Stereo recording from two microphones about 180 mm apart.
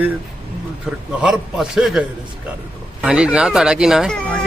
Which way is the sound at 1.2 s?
5° right (ahead or behind).